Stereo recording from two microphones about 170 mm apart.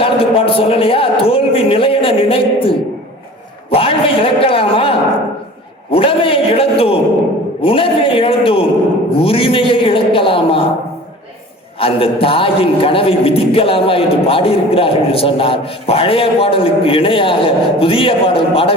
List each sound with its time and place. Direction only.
0.0 s a man's voice: 30° left (ahead or behind)
11.8 s a man's voice: 35° left (ahead or behind)